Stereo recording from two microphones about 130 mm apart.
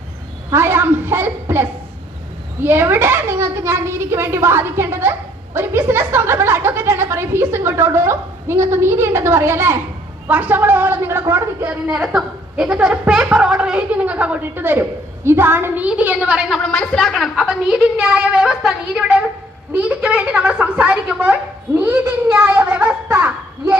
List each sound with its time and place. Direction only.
0.5 s a woman's voice: 20° right (ahead or behind)
2.6 s a woman's voice: 15° right (ahead or behind)
16.8 s a woman's voice: 5° left (ahead or behind); by 23.7 s 20° right (ahead or behind)